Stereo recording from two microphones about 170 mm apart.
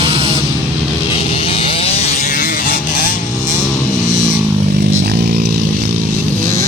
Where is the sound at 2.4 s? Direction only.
55° left (ahead or behind).